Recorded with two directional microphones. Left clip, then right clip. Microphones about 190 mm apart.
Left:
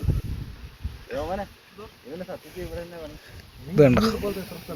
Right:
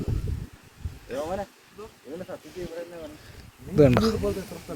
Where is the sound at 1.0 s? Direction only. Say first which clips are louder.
Left 1 dB; 30° left (ahead or behind).